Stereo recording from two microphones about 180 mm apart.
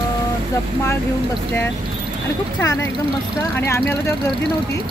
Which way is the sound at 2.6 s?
15° left (ahead or behind).